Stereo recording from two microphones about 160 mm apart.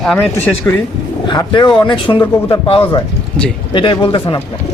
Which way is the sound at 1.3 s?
25° left (ahead or behind).